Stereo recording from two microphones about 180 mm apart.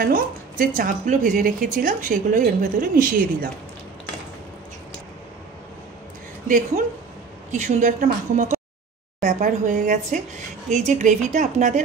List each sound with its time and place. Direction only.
0.0 s speech: 55° right (ahead or behind)
7.5 s speech: 40° right (ahead or behind)